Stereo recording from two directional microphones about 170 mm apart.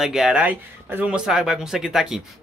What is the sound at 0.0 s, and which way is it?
Speech, 5° right (ahead or behind).